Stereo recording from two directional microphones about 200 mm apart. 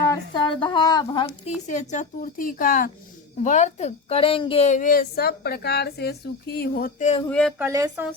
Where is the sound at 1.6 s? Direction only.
35° left (ahead or behind).